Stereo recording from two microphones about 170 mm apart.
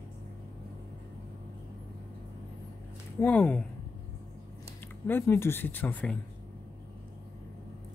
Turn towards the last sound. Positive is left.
turn(degrees=10)  # may be behind; listen again after turning